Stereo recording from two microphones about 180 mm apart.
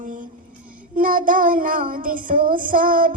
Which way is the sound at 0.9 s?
50° right (ahead or behind).